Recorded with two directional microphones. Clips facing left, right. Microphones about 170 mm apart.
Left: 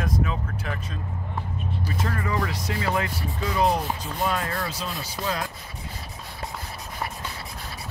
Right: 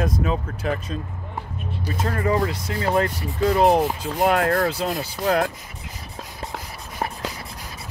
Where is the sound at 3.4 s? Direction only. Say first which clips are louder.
Right 7 dB; 55° right (ahead or behind).